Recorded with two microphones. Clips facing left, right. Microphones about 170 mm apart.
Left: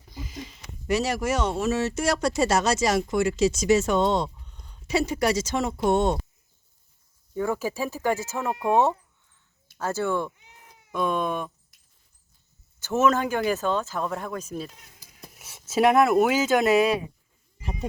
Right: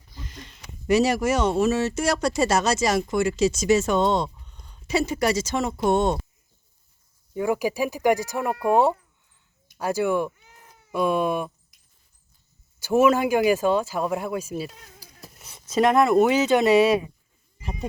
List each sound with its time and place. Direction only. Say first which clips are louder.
0.2 s a sound: left 5 dB; 5° left (ahead or behind)
0.9 s speech: right 5 dB; 5° right (ahead or behind)
5.8 s speech: right 1 dB; 25° right (ahead or behind)
7.3 s speech: right 3 dB; 15° right (ahead or behind)
12.8 s speech: right 4 dB; 10° right (ahead or behind)
15.2 s speech: left 2 dB; 5° left (ahead or behind)